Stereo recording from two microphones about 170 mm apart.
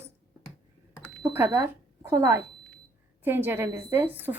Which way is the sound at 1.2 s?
10° right (ahead or behind).